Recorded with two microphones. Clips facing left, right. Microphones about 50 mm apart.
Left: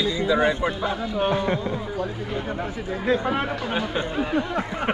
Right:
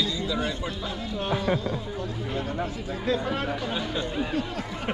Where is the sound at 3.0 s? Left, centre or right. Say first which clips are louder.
Left 4 dB; left.